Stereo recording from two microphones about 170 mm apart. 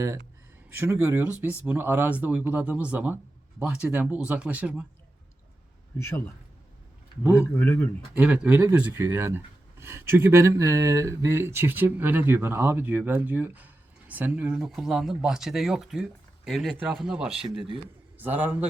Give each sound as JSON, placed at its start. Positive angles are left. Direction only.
{"t": 0.7, "sound": "speech", "side_deg": -15}
{"t": 6.0, "sound": "speech", "side_deg": 15}
{"t": 7.3, "sound": "speech", "side_deg": 15}
{"t": 8.1, "sound": "speech", "side_deg": -5}
{"t": 17.2, "sound": "speech", "side_deg": -30}
{"t": 18.2, "sound": "a man's voice", "side_deg": -10}